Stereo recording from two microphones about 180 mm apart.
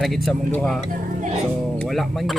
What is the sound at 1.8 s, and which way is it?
Speech, centre (ahead or behind).